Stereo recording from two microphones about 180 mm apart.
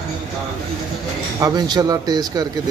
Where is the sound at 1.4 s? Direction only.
25° right (ahead or behind).